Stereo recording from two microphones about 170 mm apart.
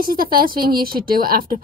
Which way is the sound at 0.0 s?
60° right (ahead or behind).